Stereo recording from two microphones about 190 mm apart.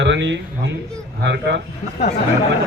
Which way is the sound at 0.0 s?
70° right (ahead or behind).